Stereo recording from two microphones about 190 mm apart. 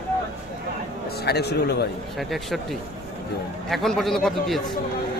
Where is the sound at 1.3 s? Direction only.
60° left (ahead or behind).